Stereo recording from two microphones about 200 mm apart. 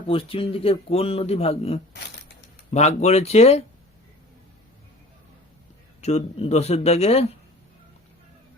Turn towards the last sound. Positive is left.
turn(degrees=30)  # may be behind; listen again after turning